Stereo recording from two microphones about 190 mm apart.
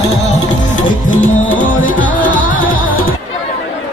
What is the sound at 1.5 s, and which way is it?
Music, 45° left (ahead or behind).